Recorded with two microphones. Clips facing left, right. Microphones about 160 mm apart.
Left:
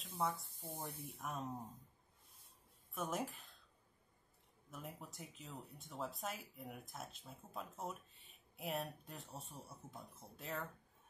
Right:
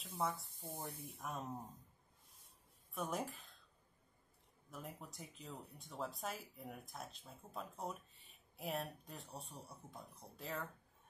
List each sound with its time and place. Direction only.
0.0 s speech: centre (ahead or behind)
2.9 s speech: centre (ahead or behind)
4.6 s speech: centre (ahead or behind)